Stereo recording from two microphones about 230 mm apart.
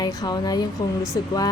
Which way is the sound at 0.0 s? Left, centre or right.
Centre.